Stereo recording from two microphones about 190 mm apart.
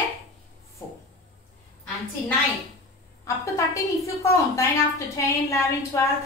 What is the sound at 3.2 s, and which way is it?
A woman's voice, 15° left (ahead or behind).